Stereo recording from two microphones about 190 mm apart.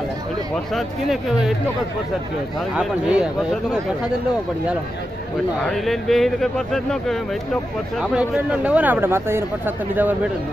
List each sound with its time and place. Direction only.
0.7 s speech: centre (ahead or behind)
2.7 s speech: 5° right (ahead or behind)
5.6 s speech: centre (ahead or behind)